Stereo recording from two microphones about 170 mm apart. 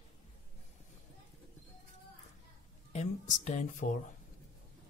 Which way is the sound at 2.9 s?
45° left (ahead or behind).